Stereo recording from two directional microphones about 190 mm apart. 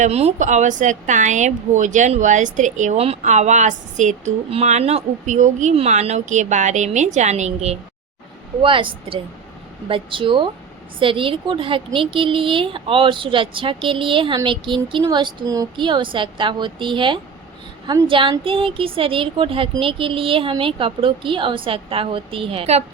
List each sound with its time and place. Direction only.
0.0 s a woman's voice: 35° right (ahead or behind)